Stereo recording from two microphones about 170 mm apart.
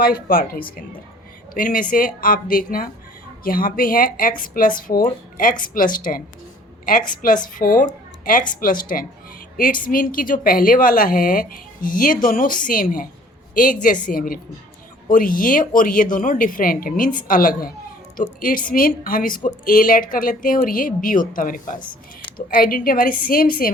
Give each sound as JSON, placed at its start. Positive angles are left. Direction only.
{"t": 0.0, "sound": "speech", "side_deg": 60}
{"t": 7.4, "sound": "a woman's voice", "side_deg": 55}